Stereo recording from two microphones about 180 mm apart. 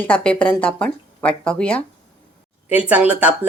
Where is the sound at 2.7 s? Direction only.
10° right (ahead or behind).